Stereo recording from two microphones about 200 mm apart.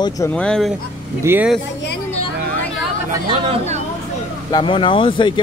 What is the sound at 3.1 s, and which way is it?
Speech, 20° right (ahead or behind).